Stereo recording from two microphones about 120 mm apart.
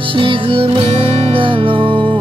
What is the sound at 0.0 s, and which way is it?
Music, 45° right (ahead or behind).